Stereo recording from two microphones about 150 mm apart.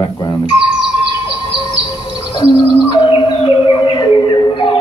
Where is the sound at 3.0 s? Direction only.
35° left (ahead or behind).